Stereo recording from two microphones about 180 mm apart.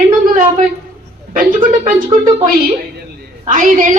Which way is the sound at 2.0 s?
20° right (ahead or behind).